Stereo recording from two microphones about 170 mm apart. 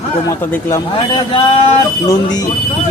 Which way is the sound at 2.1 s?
20° left (ahead or behind).